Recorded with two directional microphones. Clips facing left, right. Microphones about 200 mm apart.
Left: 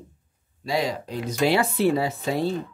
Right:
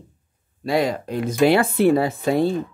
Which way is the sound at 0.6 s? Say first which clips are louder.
Right 5 dB; 55° right (ahead or behind).